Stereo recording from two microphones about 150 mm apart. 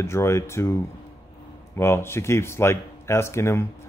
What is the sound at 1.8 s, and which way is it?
Speech, 15° left (ahead or behind).